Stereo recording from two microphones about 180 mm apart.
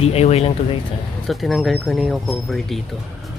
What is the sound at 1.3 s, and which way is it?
Speech, centre (ahead or behind).